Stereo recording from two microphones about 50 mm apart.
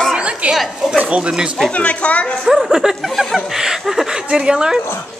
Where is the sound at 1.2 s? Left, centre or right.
Centre.